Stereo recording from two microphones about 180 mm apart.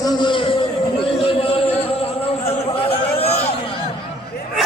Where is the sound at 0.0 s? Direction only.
25° left (ahead or behind).